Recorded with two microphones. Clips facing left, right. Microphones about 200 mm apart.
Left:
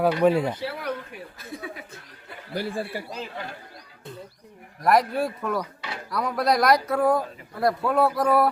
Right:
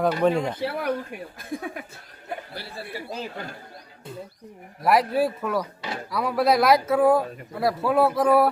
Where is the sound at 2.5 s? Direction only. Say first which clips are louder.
Left 9 dB; 45° left (ahead or behind).